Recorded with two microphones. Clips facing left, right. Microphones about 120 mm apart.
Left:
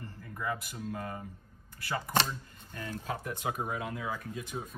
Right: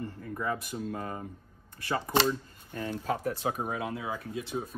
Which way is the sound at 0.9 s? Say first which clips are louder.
Right 2 dB; 30° right (ahead or behind).